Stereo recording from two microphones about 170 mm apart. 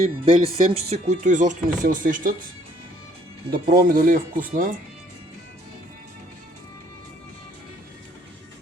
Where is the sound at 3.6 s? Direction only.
55° right (ahead or behind).